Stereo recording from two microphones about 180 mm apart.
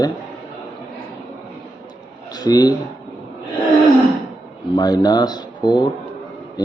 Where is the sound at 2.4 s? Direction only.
20° left (ahead or behind).